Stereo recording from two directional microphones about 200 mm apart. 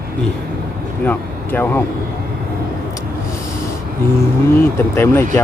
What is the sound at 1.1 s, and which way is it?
Speech, 10° left (ahead or behind).